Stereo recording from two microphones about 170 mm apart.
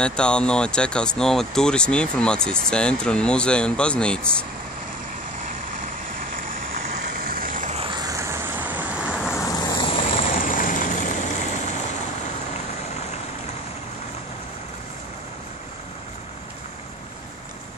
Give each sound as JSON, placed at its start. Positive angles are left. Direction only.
{"t": 0.0, "sound": "speech", "side_deg": 5}
{"t": 7.2, "sound": "vehicle", "side_deg": -60}
{"t": 7.7, "sound": "vehicle", "side_deg": -30}
{"t": 9.3, "sound": "vehicle", "side_deg": 20}
{"t": 10.2, "sound": "vehicle", "side_deg": 55}